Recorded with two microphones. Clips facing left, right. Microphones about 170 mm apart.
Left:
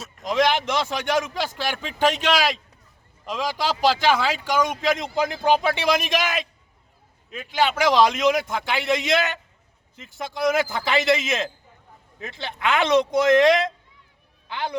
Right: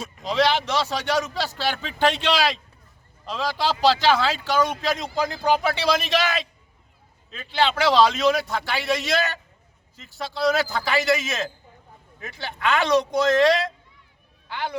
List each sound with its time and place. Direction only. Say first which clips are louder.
0.0 s speech: even; 10° left (ahead or behind)